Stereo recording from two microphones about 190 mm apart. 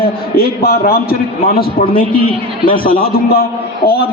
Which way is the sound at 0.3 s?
55° left (ahead or behind).